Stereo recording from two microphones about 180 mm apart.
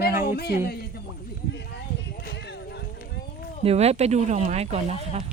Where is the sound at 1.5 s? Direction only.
70° left (ahead or behind).